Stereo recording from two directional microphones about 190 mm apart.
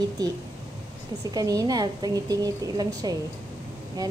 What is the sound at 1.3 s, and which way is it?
A woman's voice, 20° right (ahead or behind).